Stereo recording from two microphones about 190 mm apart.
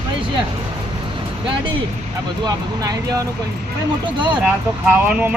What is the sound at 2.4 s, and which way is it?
Speech, 20° right (ahead or behind).